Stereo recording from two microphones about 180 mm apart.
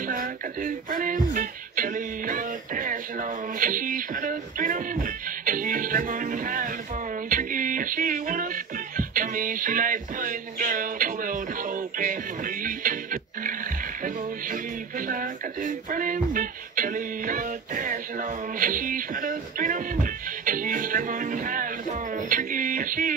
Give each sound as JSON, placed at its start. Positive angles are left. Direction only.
{"t": 0.0, "sound": "music", "side_deg": -50}